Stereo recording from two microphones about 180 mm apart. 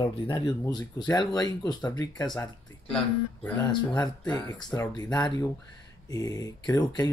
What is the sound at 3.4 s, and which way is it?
Speech, 10° left (ahead or behind).